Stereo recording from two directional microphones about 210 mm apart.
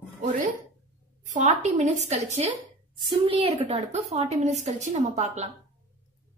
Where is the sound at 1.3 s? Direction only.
35° right (ahead or behind).